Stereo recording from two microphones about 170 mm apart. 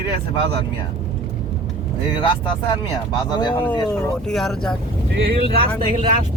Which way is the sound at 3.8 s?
Centre (ahead or behind).